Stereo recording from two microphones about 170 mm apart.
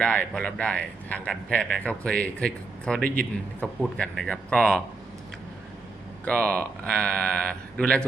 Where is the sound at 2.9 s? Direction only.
60° right (ahead or behind).